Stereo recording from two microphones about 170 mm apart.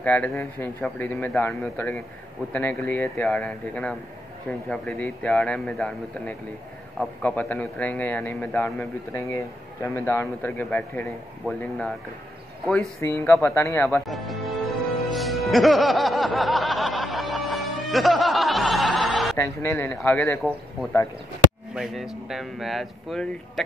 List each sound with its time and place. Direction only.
0.0 s a man's voice: 10° left (ahead or behind)
13.0 s a man's voice: 15° left (ahead or behind)
14.0 s speech: centre (ahead or behind)
15.0 s music: centre (ahead or behind)
19.3 s a man's voice: 15° left (ahead or behind)
21.7 s speech: centre (ahead or behind)